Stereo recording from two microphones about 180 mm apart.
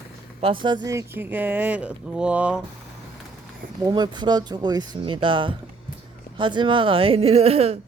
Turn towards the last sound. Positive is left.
turn(degrees=-35)  # may be behind; listen again after turning